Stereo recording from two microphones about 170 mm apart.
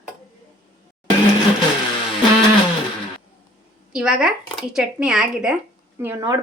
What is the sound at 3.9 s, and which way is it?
Speech, 5° right (ahead or behind).